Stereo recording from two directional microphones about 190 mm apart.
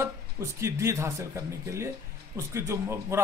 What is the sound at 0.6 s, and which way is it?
A man's voice, 15° right (ahead or behind).